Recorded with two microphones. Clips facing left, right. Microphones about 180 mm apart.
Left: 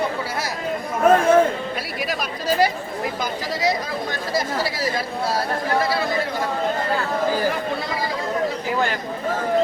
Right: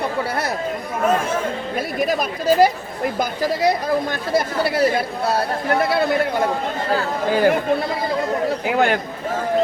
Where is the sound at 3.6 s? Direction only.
55° right (ahead or behind).